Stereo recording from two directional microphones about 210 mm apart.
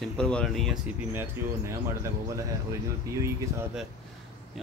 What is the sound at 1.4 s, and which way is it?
Speech, 10° right (ahead or behind).